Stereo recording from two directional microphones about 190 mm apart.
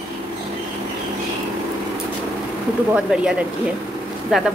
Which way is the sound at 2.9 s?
5° right (ahead or behind).